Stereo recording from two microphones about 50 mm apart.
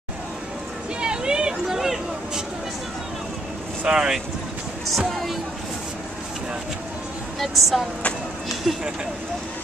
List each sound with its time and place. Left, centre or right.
1.0 s a sound: centre
3.8 s speech: centre
4.9 s speech: centre
7.3 s speech: centre